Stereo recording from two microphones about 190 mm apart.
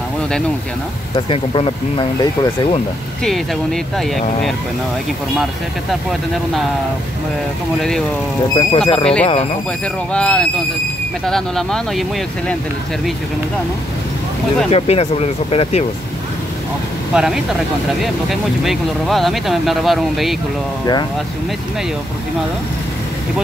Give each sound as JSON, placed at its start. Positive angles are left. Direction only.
{"t": 1.1, "sound": "speech", "side_deg": 30}
{"t": 3.3, "sound": "speech", "side_deg": 0}
{"t": 8.5, "sound": "speech", "side_deg": 25}
{"t": 10.1, "sound": "speech", "side_deg": 5}
{"t": 14.7, "sound": "speech", "side_deg": 35}
{"t": 17.1, "sound": "speech", "side_deg": -5}